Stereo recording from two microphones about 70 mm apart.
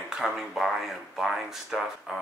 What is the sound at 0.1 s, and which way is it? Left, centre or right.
Speech, centre.